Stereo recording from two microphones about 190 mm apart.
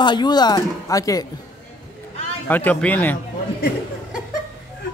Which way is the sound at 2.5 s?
10° left (ahead or behind).